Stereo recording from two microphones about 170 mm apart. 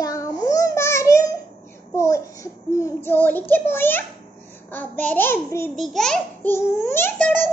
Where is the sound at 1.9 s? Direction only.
15° left (ahead or behind).